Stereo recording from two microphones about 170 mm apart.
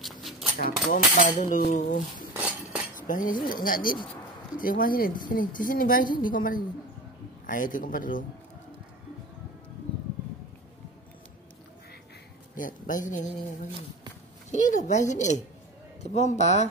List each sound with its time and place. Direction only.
0.0 s a sound: centre (ahead or behind)
0.6 s speech: 55° left (ahead or behind)
2.3 s cutlery: 10° right (ahead or behind)
3.0 s speech: 50° left (ahead or behind)
12.5 s speech: 50° left (ahead or behind)
14.5 s a man's voice: 45° left (ahead or behind)